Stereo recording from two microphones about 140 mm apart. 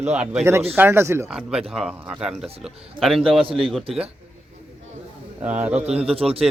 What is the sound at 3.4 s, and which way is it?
Speech, 40° right (ahead or behind).